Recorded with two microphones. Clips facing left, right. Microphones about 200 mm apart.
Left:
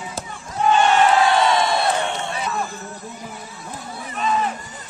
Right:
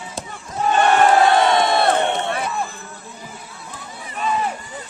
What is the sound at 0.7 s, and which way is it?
Crowd, 55° right (ahead or behind).